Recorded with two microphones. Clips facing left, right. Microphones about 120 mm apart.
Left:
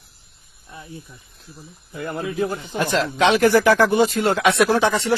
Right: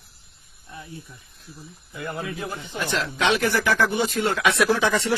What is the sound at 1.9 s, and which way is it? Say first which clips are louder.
Speech: left 6 dB; 45° left (ahead or behind).